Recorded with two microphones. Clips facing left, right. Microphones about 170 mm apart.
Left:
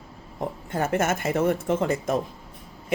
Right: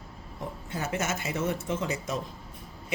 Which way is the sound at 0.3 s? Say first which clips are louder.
Left 8 dB; 55° left (ahead or behind).